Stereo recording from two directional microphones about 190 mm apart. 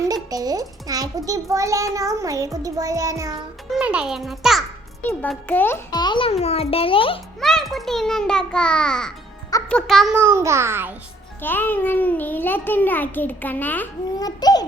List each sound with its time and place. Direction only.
0.1 s a child's voice: 20° right (ahead or behind)
3.7 s a child's voice: 5° right (ahead or behind)
5.0 s a child's voice: 10° left (ahead or behind); by 7.2 s 30° left (ahead or behind)
7.3 s a child's voice: centre (ahead or behind)
10.2 s a child's voice: 15° right (ahead or behind)
11.4 s a child's voice: 10° left (ahead or behind)
14.2 s a child's voice: 20° left (ahead or behind)